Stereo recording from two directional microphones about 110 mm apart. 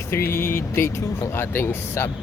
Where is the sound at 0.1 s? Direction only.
20° left (ahead or behind).